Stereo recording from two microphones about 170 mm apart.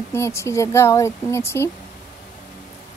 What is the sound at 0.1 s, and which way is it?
Speech, 15° left (ahead or behind).